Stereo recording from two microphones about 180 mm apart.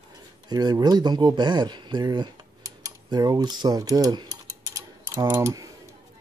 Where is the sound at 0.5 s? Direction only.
25° right (ahead or behind).